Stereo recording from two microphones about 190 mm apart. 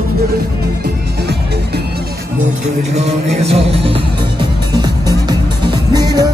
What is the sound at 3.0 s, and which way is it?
Music, 35° right (ahead or behind).